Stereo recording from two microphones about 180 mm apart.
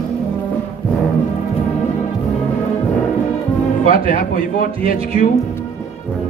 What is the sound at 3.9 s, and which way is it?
A man's voice, 50° left (ahead or behind).